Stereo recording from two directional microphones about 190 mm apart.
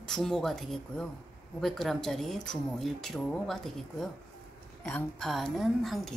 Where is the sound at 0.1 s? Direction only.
Centre (ahead or behind).